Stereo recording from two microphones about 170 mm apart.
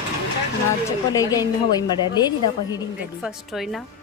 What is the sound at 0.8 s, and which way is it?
Speech, 20° left (ahead or behind).